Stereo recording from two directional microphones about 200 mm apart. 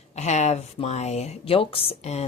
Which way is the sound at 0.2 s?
35° left (ahead or behind).